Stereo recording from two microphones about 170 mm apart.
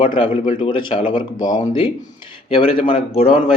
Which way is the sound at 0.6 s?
30° left (ahead or behind).